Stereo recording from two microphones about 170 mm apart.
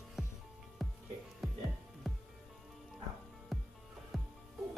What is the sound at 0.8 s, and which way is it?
Music, centre (ahead or behind).